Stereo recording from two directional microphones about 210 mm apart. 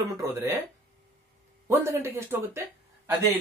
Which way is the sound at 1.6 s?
10° right (ahead or behind).